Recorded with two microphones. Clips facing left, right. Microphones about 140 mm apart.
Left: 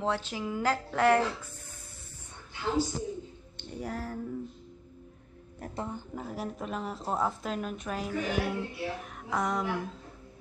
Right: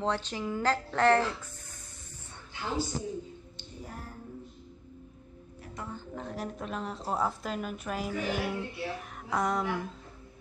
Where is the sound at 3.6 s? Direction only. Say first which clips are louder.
Left 9 dB; 85° left.